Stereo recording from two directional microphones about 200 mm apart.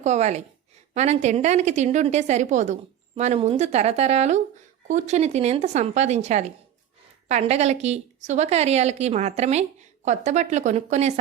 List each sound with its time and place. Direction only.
0.0 s a woman's voice: 35° right (ahead or behind)